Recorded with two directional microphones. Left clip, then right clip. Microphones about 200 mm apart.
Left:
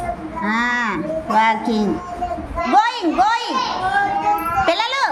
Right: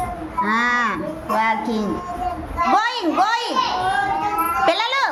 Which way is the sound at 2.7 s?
5° left (ahead or behind).